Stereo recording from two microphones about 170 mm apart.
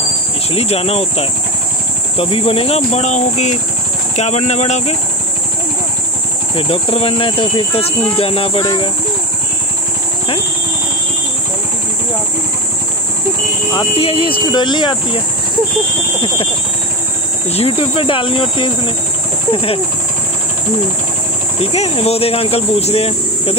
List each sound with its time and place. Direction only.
0.5 s speech: 35° left (ahead or behind)
6.5 s speech: 35° left (ahead or behind)
13.7 s speech: 35° left (ahead or behind)
17.5 s speech: 35° left (ahead or behind)
21.5 s speech: 35° left (ahead or behind)